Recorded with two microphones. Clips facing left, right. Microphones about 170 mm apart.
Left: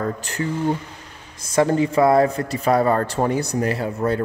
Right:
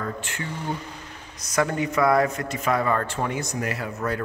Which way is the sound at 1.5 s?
30° left (ahead or behind).